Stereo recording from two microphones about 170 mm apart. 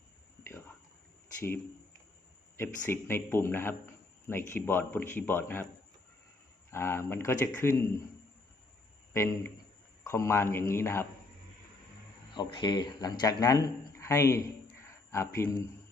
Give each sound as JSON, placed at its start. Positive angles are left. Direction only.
{"t": 1.4, "sound": "speech", "side_deg": 15}
{"t": 2.9, "sound": "speech", "side_deg": 15}
{"t": 6.7, "sound": "speech", "side_deg": 15}
{"t": 9.1, "sound": "speech", "side_deg": 15}
{"t": 12.3, "sound": "speech", "side_deg": 25}